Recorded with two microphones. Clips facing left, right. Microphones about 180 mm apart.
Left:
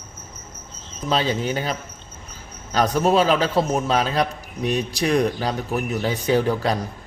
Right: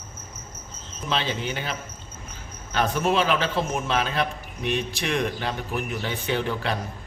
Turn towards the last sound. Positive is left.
turn(degrees=40)  # may be behind; listen again after turning